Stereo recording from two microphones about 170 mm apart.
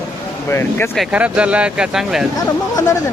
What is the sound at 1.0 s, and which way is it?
Speech, 10° right (ahead or behind).